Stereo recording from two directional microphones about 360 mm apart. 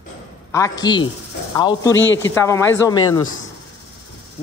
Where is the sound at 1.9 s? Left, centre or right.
Left.